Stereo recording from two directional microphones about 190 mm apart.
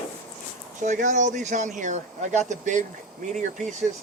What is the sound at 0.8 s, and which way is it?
Speech, 40° right (ahead or behind).